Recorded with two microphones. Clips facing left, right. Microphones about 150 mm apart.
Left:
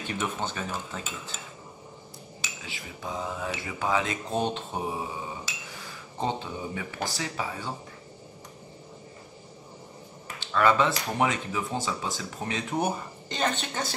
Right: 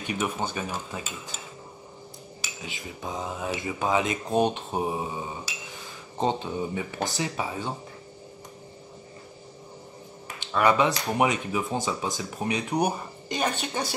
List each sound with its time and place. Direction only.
0.0 s speech: 15° right (ahead or behind)
2.6 s speech: 20° right (ahead or behind)
6.1 s speech: 20° right (ahead or behind)
10.4 s speech: 15° right (ahead or behind)